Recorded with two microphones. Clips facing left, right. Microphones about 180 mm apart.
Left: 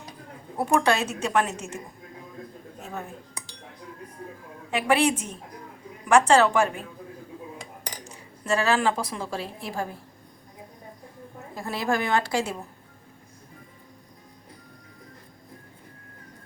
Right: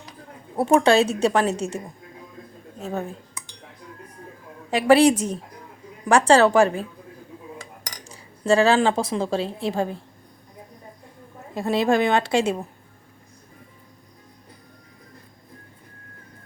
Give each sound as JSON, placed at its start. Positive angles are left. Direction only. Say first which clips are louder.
{"t": 0.6, "sound": "speech", "louder": "right 6 dB", "side_deg": -25}
{"t": 4.7, "sound": "a woman's voice", "louder": "right 7 dB", "side_deg": -35}
{"t": 8.1, "sound": "speech", "louder": "right 8 dB", "side_deg": -30}
{"t": 11.5, "sound": "speech", "louder": "right 7 dB", "side_deg": -25}